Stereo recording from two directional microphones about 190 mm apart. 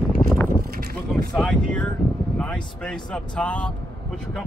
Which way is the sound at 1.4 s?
5° left (ahead or behind).